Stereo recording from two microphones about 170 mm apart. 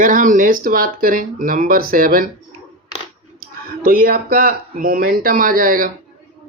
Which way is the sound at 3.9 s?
55° right (ahead or behind).